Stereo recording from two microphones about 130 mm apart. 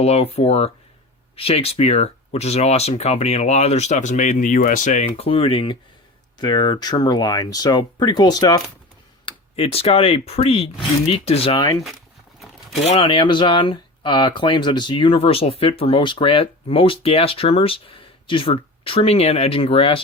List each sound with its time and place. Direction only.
0.0 s speech: 55° left (ahead or behind)
6.4 s speech: 35° left (ahead or behind)
9.2 s speech: 50° left (ahead or behind)
13.0 s speech: 40° left (ahead or behind)